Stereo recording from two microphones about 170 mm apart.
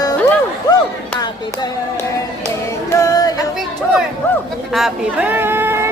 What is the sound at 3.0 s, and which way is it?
Music, 20° left (ahead or behind).